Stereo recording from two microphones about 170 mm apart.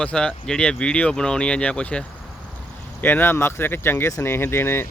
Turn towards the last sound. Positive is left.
turn(degrees=15)  # may be behind; listen again after turning